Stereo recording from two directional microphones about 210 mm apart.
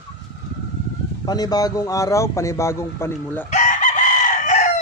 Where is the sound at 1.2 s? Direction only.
20° left (ahead or behind).